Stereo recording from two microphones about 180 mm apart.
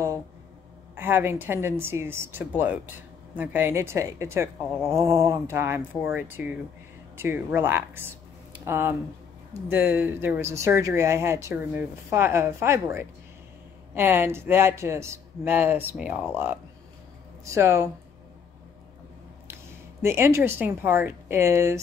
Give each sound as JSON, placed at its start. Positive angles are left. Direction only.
{"t": 0.9, "sound": "speech", "side_deg": -10}
{"t": 20.0, "sound": "speech", "side_deg": -15}